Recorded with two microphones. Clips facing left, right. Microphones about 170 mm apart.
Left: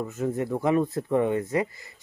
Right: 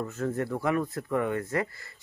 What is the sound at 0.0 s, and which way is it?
Speech, 15° left (ahead or behind).